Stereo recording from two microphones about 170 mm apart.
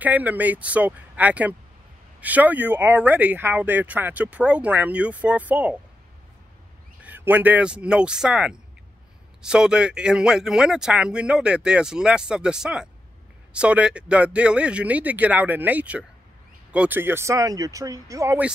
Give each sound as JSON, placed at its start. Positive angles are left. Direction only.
{"t": 0.0, "sound": "speech", "side_deg": -10}
{"t": 7.0, "sound": "a man's voice", "side_deg": -10}